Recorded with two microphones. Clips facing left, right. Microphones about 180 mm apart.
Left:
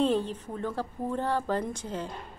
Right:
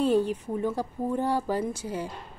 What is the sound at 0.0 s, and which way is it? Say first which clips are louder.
A woman's voice: right 3 dB; 10° right (ahead or behind).